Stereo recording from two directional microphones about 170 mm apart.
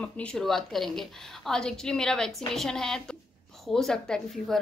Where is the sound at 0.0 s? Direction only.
5° left (ahead or behind).